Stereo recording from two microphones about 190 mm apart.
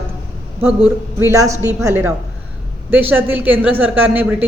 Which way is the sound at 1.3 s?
15° right (ahead or behind).